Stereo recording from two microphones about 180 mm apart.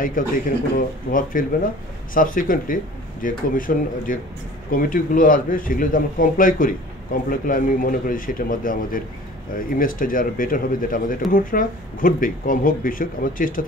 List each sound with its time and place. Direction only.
0.2 s a man's voice: 50° left (ahead or behind)